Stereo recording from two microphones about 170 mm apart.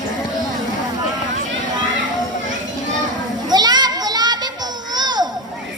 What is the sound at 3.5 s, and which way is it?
Children playing, 25° right (ahead or behind).